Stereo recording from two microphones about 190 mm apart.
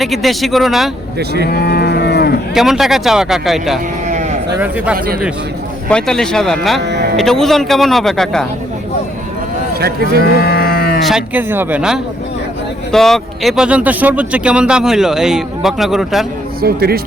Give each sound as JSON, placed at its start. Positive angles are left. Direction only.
{"t": 0.0, "sound": "speech", "side_deg": 0}
{"t": 1.5, "sound": "cattle", "side_deg": 55}
{"t": 2.6, "sound": "speech", "side_deg": 0}
{"t": 4.1, "sound": "sheep", "side_deg": -40}
{"t": 4.5, "sound": "speech", "side_deg": -10}
{"t": 5.9, "sound": "speech", "side_deg": 5}
{"t": 6.7, "sound": "sheep", "side_deg": -65}
{"t": 7.2, "sound": "speech", "side_deg": 0}
{"t": 10.4, "sound": "sheep", "side_deg": 55}
{"t": 11.0, "sound": "speech", "side_deg": -5}
{"t": 16.6, "sound": "a man's voice", "side_deg": -55}